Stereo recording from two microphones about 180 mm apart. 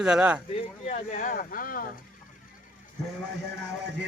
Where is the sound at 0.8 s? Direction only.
40° left (ahead or behind).